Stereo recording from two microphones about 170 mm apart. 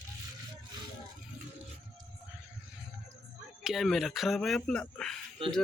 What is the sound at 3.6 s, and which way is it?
Speech, centre (ahead or behind).